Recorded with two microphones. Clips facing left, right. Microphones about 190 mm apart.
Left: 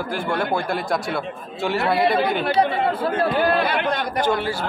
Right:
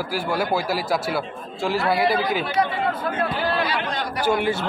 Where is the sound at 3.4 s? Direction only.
55° left (ahead or behind).